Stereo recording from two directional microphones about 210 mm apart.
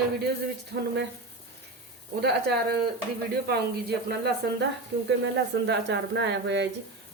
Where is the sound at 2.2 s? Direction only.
50° right (ahead or behind).